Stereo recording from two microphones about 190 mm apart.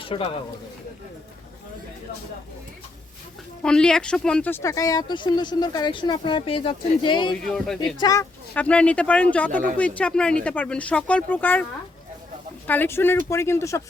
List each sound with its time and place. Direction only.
0.0 s speech: 30° left (ahead or behind)
3.6 s speech: 5° left (ahead or behind); by 7.3 s 25° left (ahead or behind)
7.4 s speech: centre (ahead or behind)
7.9 s speech: 20° left (ahead or behind)
12.6 s speech: 10° left (ahead or behind)